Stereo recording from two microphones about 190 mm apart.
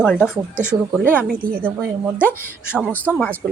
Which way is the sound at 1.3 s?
50° right (ahead or behind).